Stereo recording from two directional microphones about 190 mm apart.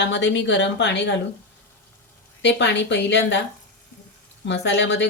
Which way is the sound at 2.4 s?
70° left (ahead or behind).